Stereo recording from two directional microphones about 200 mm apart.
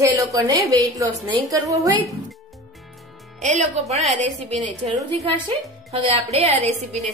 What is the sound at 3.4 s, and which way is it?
A woman's voice, 35° right (ahead or behind).